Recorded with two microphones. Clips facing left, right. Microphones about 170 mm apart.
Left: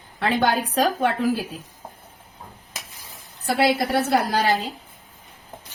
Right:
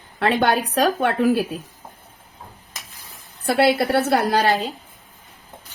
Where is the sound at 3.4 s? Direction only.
65° right (ahead or behind).